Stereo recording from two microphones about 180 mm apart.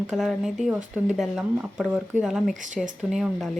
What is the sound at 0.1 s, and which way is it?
Speech, centre (ahead or behind).